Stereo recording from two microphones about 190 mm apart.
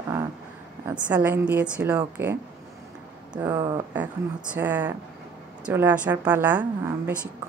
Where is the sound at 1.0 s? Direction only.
10° right (ahead or behind).